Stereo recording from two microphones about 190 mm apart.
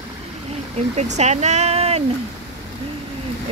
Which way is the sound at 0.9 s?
35° right (ahead or behind).